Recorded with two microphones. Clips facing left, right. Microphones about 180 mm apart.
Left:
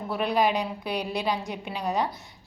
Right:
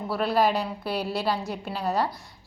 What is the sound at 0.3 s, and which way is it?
Speech, 15° left (ahead or behind).